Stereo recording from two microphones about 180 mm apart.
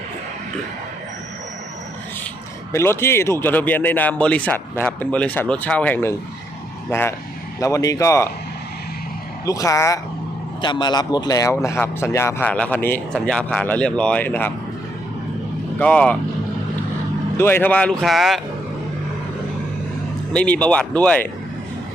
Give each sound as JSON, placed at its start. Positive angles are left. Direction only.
{"t": 2.7, "sound": "speech", "side_deg": 15}
{"t": 7.6, "sound": "speech", "side_deg": 20}
{"t": 9.5, "sound": "speech", "side_deg": 20}
{"t": 15.8, "sound": "speech", "side_deg": 5}
{"t": 17.3, "sound": "speech", "side_deg": 10}
{"t": 20.3, "sound": "speech", "side_deg": 5}